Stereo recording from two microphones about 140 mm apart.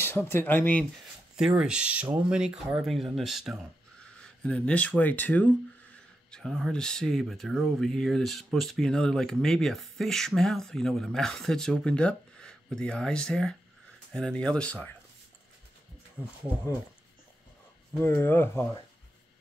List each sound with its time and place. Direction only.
0.0 s speech: 15° left (ahead or behind)
0.9 s speech: 5° right (ahead or behind)
18.0 s speech: 15° left (ahead or behind)